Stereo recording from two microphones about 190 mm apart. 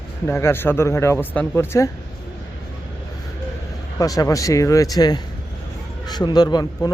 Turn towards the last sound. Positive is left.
turn(degrees=20)  # may be behind; listen again after turning